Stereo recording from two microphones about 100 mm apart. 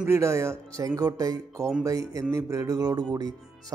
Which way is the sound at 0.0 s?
30° right (ahead or behind).